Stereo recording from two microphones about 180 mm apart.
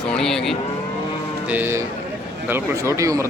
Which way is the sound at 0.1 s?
5° left (ahead or behind).